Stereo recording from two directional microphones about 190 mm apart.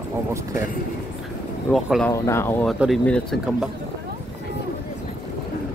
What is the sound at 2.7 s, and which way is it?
Speech, centre (ahead or behind).